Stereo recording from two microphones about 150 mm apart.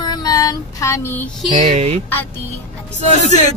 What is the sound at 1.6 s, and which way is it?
Speech, 45° right (ahead or behind).